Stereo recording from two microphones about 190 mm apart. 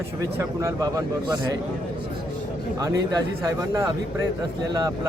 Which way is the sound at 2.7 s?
20° right (ahead or behind).